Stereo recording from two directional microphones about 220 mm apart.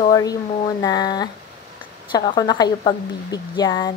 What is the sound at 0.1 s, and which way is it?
A woman's voice, 15° left (ahead or behind).